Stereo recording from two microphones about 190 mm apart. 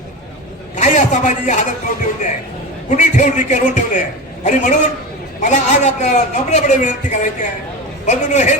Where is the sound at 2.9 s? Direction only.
40° left (ahead or behind).